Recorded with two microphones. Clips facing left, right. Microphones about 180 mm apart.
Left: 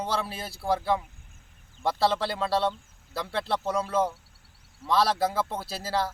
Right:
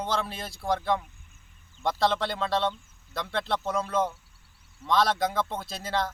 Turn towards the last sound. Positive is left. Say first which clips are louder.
# left 1 dB
turn(degrees=5)  # may be behind; listen again after turning